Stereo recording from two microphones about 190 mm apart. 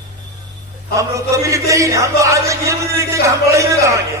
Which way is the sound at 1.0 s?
15° right (ahead or behind).